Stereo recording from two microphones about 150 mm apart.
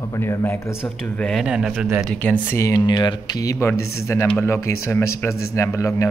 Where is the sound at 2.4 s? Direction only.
20° left (ahead or behind).